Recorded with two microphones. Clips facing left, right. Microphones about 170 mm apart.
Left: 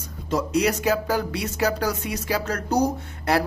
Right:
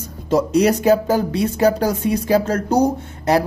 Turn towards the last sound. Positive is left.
turn(degrees=-25)  # may be behind; listen again after turning